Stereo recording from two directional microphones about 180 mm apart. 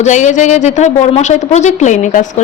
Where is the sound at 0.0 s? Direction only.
40° left (ahead or behind).